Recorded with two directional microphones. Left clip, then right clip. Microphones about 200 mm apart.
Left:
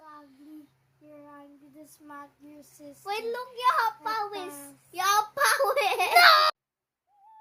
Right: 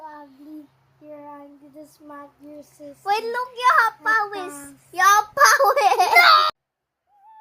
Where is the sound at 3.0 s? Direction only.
20° right (ahead or behind).